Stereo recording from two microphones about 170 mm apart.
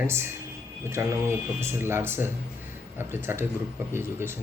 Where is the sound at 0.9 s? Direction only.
15° right (ahead or behind).